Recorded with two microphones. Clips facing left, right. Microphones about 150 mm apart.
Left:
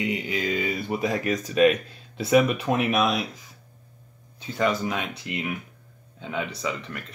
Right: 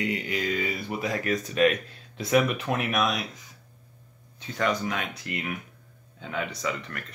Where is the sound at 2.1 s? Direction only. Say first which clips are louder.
Left 3 dB; 30° left (ahead or behind).